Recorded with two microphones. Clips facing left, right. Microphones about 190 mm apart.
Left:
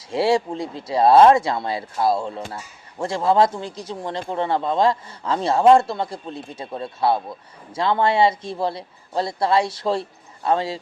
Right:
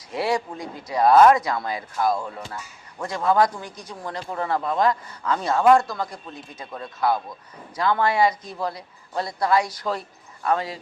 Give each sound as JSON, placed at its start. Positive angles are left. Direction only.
{"t": 0.1, "sound": "speech", "side_deg": 25}